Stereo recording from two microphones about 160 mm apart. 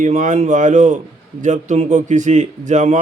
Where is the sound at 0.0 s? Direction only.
50° right (ahead or behind).